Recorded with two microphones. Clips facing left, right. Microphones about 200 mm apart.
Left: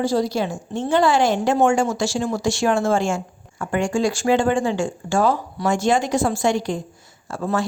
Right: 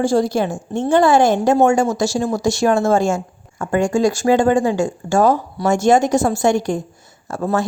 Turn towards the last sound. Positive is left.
turn(degrees=-40)  # may be behind; listen again after turning